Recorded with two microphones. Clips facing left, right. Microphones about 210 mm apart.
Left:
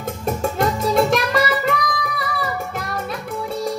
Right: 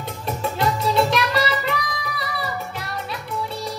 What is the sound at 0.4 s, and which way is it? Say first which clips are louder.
Music: left 1 dB; 45° left (ahead or behind).